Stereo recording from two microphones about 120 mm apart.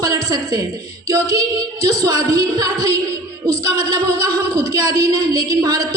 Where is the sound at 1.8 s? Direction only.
30° right (ahead or behind).